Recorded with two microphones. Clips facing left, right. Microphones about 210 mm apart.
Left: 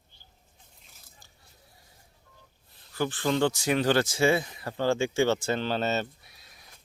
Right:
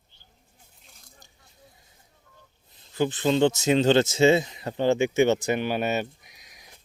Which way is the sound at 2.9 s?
20° right (ahead or behind).